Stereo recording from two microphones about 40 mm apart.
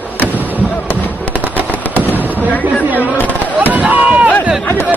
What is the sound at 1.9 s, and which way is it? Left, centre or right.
Fireworks, left.